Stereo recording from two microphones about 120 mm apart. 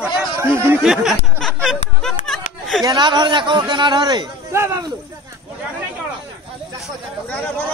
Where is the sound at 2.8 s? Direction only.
40° right (ahead or behind).